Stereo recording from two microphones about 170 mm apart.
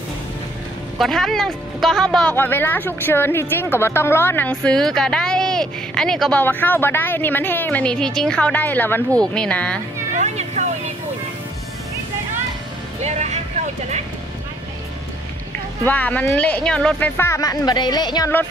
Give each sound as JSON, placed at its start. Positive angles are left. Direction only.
{"t": 0.9, "sound": "a woman's voice", "side_deg": 0}
{"t": 10.1, "sound": "a sound", "side_deg": -40}
{"t": 13.0, "sound": "vehicle", "side_deg": -40}
{"t": 15.8, "sound": "a woman's voice", "side_deg": 10}